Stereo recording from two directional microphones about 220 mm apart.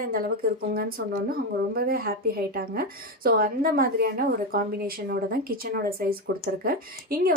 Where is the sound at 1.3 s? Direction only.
40° right (ahead or behind).